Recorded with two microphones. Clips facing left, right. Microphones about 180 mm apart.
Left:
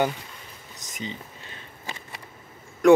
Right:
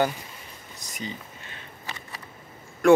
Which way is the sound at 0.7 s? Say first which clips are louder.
Left 1 dB; 20° left (ahead or behind).